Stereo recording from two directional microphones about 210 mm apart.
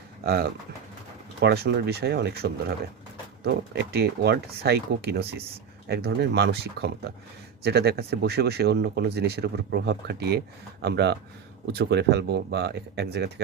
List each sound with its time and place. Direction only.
1.4 s speech: 50° right (ahead or behind)